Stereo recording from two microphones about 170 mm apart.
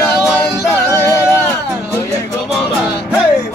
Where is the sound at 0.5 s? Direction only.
15° left (ahead or behind).